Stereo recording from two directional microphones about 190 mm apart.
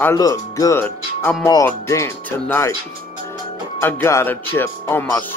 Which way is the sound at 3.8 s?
10° left (ahead or behind).